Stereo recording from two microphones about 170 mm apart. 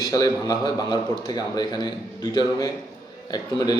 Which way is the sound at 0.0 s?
20° left (ahead or behind).